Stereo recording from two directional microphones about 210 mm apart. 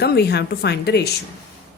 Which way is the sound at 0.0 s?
50° left (ahead or behind).